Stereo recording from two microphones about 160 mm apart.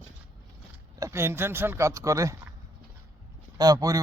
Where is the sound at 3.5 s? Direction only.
25° right (ahead or behind).